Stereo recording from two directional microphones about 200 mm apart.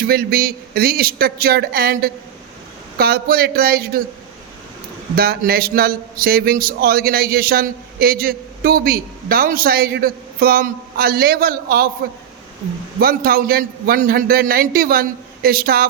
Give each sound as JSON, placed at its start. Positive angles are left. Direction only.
{"t": 0.0, "sound": "a man's voice", "side_deg": -50}
{"t": 5.1, "sound": "a man's voice", "side_deg": -50}
{"t": 13.0, "sound": "a man's voice", "side_deg": -50}